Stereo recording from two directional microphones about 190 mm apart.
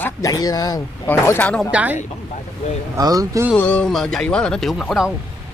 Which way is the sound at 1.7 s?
5° right (ahead or behind).